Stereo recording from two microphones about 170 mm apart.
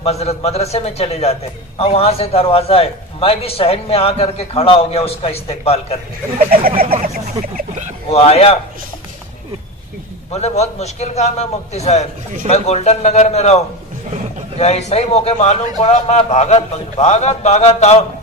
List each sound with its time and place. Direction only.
0.0 s a man's voice: 40° left (ahead or behind)
6.3 s a sound: 60° right (ahead or behind)
7.5 s a sound: 45° right (ahead or behind)
8.1 s a man's voice: 35° left (ahead or behind)
10.3 s a man's voice: 40° left (ahead or behind)
14.6 s a man's voice: 40° left (ahead or behind)